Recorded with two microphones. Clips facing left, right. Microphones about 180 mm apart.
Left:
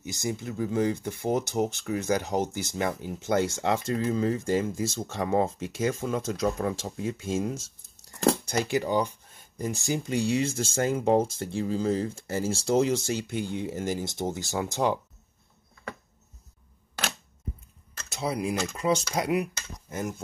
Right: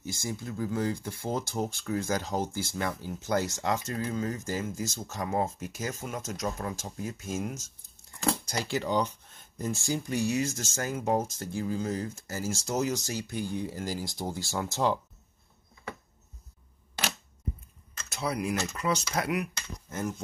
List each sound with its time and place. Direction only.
0.0 s speech: 20° left (ahead or behind)
8.6 s speech: 15° left (ahead or behind)
18.1 s speech: 25° left (ahead or behind)
19.9 s speech: 15° left (ahead or behind)